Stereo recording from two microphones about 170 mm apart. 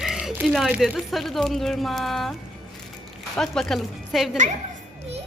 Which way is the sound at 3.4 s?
Centre (ahead or behind).